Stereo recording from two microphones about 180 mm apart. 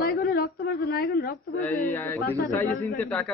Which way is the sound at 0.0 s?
60° left (ahead or behind).